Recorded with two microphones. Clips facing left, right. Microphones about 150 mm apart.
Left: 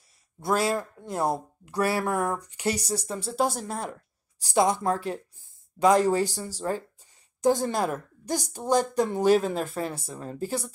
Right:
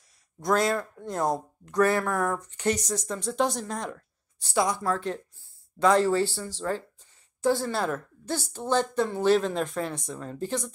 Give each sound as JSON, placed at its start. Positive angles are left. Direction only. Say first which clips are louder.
{"t": 0.4, "sound": "speech", "louder": "right 1 dB", "side_deg": 5}